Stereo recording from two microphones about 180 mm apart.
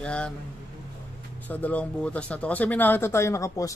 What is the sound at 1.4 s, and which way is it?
Speech, 10° left (ahead or behind).